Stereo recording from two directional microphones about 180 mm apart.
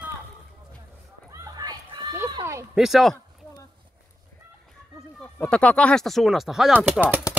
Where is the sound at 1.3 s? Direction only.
20° right (ahead or behind).